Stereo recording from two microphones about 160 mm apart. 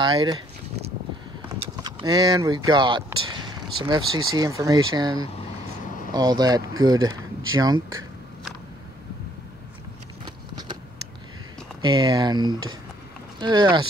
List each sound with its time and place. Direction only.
0.0 s speech: 30° right (ahead or behind)
1.8 s speech: 25° right (ahead or behind)
10.2 s a sound: 30° right (ahead or behind)
11.8 s speech: 30° right (ahead or behind)